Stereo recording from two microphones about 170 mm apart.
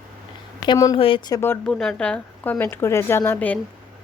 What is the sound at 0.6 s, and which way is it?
Speech, 25° left (ahead or behind).